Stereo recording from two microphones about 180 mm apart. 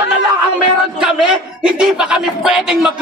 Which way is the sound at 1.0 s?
5° right (ahead or behind).